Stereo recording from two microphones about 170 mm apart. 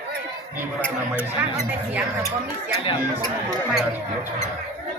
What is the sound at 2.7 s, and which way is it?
Speech, 30° left (ahead or behind).